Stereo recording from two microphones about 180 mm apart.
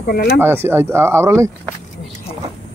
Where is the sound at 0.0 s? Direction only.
60° left (ahead or behind).